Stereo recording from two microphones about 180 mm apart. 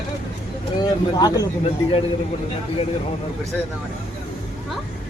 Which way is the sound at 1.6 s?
30° left (ahead or behind).